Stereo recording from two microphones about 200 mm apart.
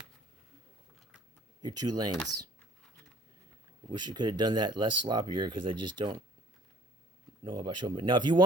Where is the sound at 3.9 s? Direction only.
20° right (ahead or behind).